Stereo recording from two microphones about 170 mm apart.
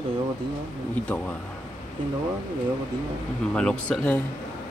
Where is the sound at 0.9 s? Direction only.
10° left (ahead or behind).